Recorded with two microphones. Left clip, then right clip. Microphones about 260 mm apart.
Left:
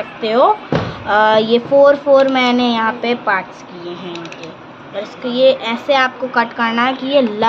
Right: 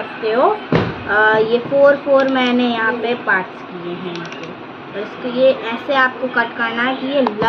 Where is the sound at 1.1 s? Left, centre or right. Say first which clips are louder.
Left 2 dB; left.